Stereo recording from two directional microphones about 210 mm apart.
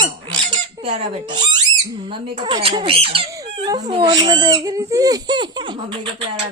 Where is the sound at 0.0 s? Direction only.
25° right (ahead or behind).